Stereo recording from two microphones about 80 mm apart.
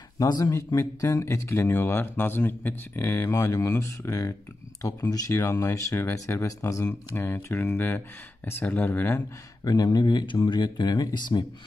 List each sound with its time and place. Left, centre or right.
0.2 s speech: left
7.4 s speech: left
9.7 s speech: left